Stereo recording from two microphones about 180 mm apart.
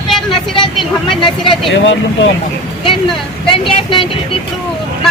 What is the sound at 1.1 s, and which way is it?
Speech, 25° left (ahead or behind).